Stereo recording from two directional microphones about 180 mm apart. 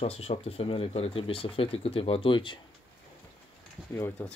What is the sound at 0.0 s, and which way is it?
Speech, 35° left (ahead or behind).